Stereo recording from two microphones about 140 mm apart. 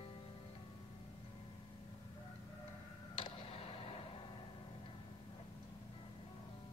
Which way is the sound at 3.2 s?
45° left (ahead or behind).